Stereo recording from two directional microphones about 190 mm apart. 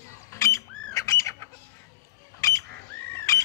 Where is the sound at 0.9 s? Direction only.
15° left (ahead or behind).